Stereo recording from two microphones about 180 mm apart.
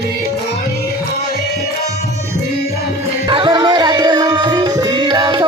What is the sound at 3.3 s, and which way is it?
Music, 25° right (ahead or behind).